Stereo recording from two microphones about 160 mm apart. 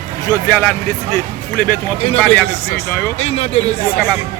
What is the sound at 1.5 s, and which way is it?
Speech, 10° left (ahead or behind).